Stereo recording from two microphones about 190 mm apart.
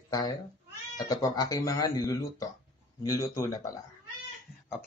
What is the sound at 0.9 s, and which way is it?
Speech, 20° left (ahead or behind).